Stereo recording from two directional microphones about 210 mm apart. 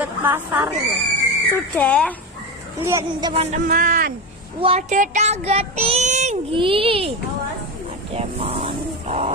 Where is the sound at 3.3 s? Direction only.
30° right (ahead or behind).